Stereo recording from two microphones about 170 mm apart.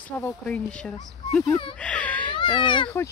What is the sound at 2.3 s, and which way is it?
Speech, 30° left (ahead or behind).